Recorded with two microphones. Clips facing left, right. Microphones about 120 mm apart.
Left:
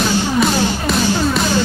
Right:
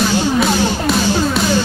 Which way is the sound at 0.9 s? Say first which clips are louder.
Right 1 dB; 5° right (ahead or behind).